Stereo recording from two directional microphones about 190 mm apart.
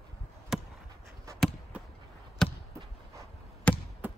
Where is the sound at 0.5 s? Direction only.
5° right (ahead or behind).